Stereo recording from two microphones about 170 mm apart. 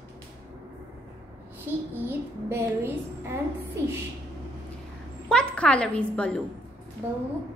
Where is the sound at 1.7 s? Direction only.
10° right (ahead or behind).